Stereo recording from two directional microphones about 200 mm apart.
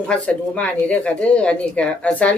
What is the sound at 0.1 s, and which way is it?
Speech, 5° left (ahead or behind).